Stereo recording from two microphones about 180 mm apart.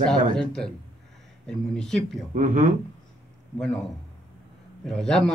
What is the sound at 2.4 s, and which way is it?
Speech, 45° right (ahead or behind).